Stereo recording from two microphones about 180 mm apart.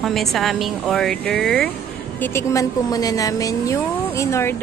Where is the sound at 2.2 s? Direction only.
15° left (ahead or behind).